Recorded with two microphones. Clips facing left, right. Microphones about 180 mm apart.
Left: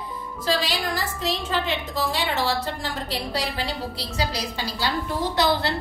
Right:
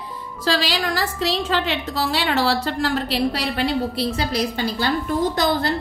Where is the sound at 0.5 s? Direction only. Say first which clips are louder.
Right 3 dB; 85° right.